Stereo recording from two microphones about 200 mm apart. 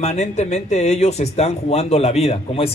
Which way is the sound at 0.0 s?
35° left (ahead or behind).